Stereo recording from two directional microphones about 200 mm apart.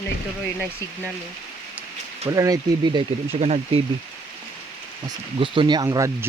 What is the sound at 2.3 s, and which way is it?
Speech, 15° right (ahead or behind).